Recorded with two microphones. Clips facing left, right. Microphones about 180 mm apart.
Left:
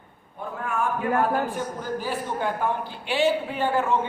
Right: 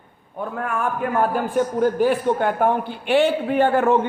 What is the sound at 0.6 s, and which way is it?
A man's voice, 60° right (ahead or behind).